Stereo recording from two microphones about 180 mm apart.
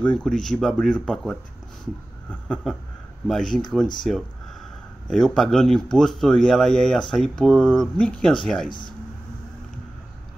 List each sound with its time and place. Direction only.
0.0 s speech: 5° left (ahead or behind)
5.0 s speech: centre (ahead or behind)
8.6 s speech: 25° left (ahead or behind)